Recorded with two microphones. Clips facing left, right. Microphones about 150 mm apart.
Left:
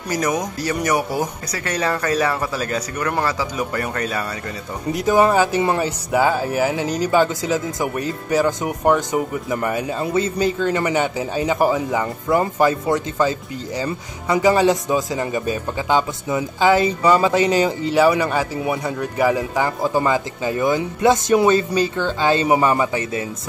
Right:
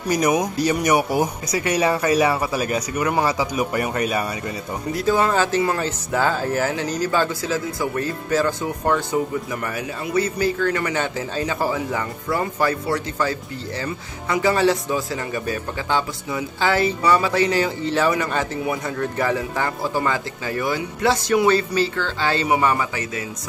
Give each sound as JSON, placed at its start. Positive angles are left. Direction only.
{"t": 0.1, "sound": "speech", "side_deg": -15}
{"t": 4.9, "sound": "a man's voice", "side_deg": 15}